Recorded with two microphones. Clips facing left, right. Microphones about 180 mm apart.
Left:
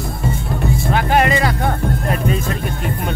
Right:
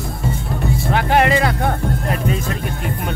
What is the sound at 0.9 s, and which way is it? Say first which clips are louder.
Speech: right 1 dB; 70° right (ahead or behind).